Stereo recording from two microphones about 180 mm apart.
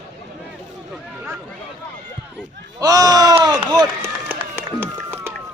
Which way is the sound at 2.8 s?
20° right (ahead or behind).